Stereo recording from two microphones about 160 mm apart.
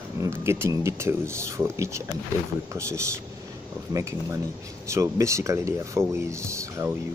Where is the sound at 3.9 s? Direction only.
20° right (ahead or behind).